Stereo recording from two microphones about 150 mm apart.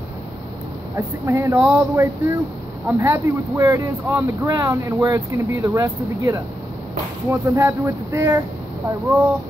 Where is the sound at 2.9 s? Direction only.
15° right (ahead or behind).